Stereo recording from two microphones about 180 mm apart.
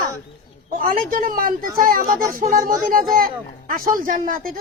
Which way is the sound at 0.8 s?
50° right (ahead or behind).